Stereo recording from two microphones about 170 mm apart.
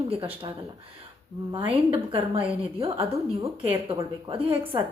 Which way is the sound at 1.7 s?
30° right (ahead or behind).